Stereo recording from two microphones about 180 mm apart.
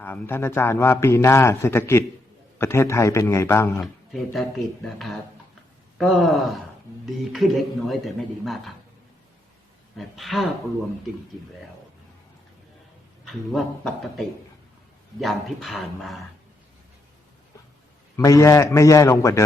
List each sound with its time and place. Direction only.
0.0 s a man's voice: 10° left (ahead or behind)
3.8 s speech: centre (ahead or behind)
10.0 s speech: centre (ahead or behind)
13.2 s speech: centre (ahead or behind)
18.2 s a man's voice: 20° left (ahead or behind)